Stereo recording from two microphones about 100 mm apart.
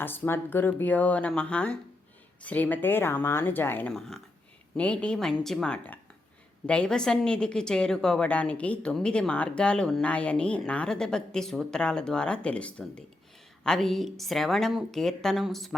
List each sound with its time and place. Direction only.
0.0 s a woman's voice: 20° left (ahead or behind); by 15.7 s centre (ahead or behind)